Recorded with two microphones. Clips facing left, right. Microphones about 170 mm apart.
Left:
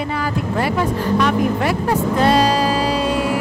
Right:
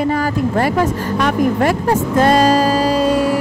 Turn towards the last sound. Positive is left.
turn(degrees=-40)  # may be behind; listen again after turning